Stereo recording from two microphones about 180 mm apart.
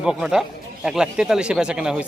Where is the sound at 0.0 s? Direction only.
5° right (ahead or behind).